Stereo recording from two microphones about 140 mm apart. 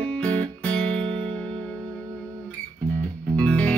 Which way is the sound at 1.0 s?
40° right (ahead or behind).